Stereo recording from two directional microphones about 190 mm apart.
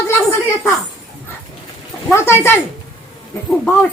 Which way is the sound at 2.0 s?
15° left (ahead or behind).